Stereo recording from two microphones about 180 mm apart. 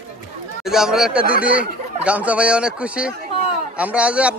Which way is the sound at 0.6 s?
Centre (ahead or behind).